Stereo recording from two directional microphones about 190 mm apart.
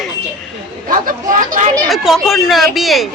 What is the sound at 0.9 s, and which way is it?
Speech, 45° right (ahead or behind).